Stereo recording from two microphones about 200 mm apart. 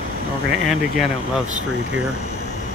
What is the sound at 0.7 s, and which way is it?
Speech, centre (ahead or behind).